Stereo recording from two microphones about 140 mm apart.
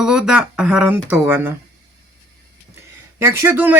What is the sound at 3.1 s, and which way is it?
Speech, 20° right (ahead or behind).